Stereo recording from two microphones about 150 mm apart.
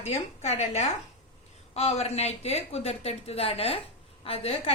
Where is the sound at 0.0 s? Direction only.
45° left (ahead or behind).